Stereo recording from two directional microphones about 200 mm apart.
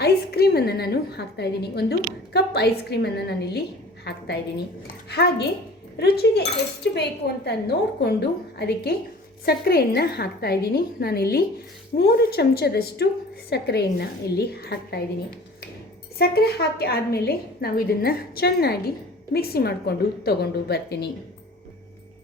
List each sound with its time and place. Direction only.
0.0 s a woman's voice: 50° left (ahead or behind)
16.1 s a woman's voice: 50° left (ahead or behind)